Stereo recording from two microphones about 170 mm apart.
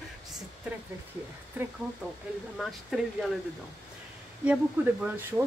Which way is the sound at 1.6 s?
10° right (ahead or behind).